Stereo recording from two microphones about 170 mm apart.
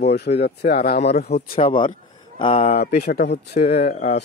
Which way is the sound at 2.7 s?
70° left (ahead or behind).